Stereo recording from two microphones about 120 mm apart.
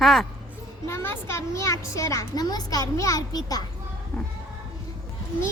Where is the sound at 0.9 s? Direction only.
20° left (ahead or behind).